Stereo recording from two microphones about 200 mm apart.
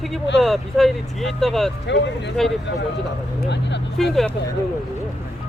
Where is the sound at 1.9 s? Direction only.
60° left (ahead or behind).